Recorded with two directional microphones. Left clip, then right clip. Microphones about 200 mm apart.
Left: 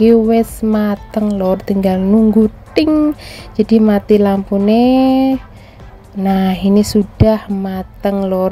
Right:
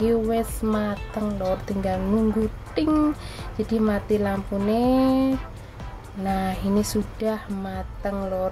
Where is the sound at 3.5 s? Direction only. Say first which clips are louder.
Left 12 dB; 35° left (ahead or behind).